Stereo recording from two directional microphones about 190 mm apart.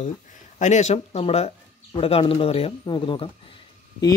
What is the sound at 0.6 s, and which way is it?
Speech, 35° left (ahead or behind).